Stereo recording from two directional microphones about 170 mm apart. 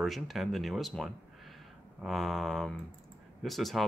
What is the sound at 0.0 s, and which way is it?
Speech, centre (ahead or behind).